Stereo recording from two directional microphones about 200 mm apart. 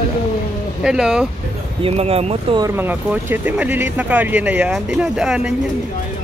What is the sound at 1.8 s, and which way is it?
Speech, 30° right (ahead or behind).